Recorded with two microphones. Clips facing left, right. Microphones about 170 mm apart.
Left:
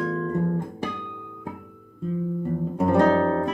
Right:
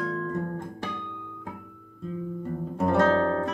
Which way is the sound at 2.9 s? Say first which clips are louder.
Left 3 dB; 15° left (ahead or behind).